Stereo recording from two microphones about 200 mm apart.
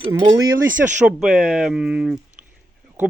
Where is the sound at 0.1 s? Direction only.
25° right (ahead or behind).